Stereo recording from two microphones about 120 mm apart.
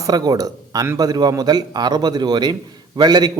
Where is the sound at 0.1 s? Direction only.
35° right (ahead or behind).